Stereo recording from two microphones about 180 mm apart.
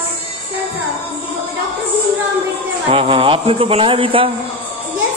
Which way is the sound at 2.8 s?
30° right (ahead or behind).